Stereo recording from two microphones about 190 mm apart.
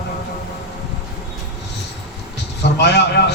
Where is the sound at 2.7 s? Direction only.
60° left (ahead or behind).